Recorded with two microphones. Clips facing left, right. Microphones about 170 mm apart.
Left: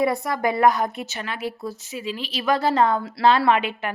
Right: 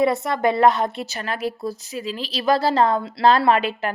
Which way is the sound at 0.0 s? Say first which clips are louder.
Right 3 dB; 25° right (ahead or behind).